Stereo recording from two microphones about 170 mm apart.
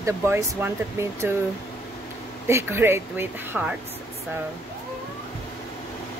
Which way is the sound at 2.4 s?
15° right (ahead or behind).